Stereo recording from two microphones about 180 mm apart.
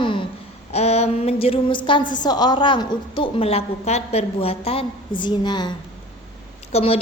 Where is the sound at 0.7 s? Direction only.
35° left (ahead or behind).